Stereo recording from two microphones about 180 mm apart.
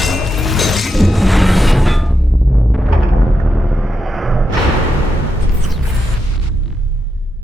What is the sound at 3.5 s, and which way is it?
Vehicle, centre (ahead or behind).